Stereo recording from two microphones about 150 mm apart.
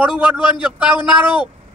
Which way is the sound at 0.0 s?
10° right (ahead or behind).